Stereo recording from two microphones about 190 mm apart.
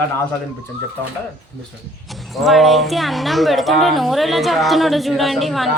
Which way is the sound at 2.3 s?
Centre (ahead or behind).